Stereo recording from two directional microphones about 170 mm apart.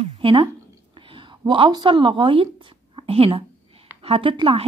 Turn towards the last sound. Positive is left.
turn(degrees=-30)  # may be behind; listen again after turning